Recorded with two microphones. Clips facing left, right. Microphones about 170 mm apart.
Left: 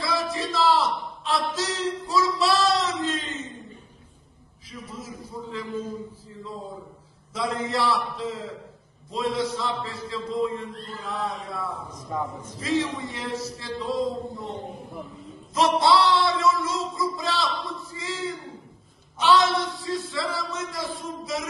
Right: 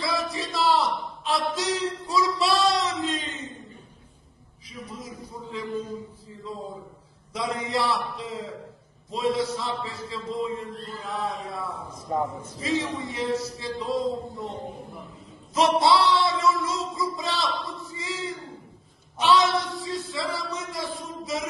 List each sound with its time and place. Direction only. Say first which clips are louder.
0.0 s a sound: left 1 dB; centre (ahead or behind)
7.3 s speech: left 1 dB; centre (ahead or behind)
12.1 s a man's voice: right 3 dB; 35° right (ahead or behind)
12.5 s speech: left 2 dB; centre (ahead or behind)
15.5 s a sound: even; centre (ahead or behind)
19.1 s speech: left 1 dB; centre (ahead or behind)